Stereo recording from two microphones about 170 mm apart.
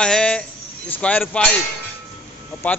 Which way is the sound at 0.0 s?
5° left (ahead or behind).